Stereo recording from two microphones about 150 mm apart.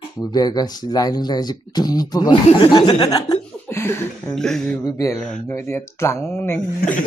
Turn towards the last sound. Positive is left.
turn(degrees=15)  # may be behind; listen again after turning